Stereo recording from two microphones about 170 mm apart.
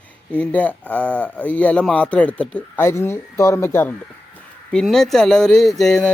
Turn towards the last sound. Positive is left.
turn(degrees=0)  # may be behind; listen again after turning